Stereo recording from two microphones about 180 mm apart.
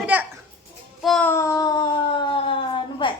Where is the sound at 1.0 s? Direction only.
5° left (ahead or behind).